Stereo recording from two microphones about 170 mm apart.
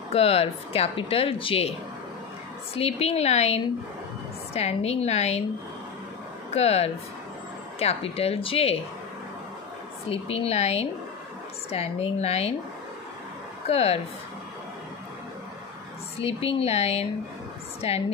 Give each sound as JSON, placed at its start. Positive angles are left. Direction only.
{"t": 0.1, "sound": "speech", "side_deg": 35}
{"t": 2.7, "sound": "speech", "side_deg": 35}
{"t": 6.5, "sound": "speech", "side_deg": 40}
{"t": 10.0, "sound": "speech", "side_deg": 35}
{"t": 13.7, "sound": "speech", "side_deg": 35}
{"t": 16.2, "sound": "speech", "side_deg": 35}